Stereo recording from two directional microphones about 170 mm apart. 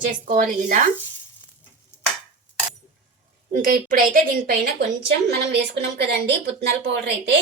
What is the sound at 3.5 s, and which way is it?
A woman's voice, 55° right (ahead or behind).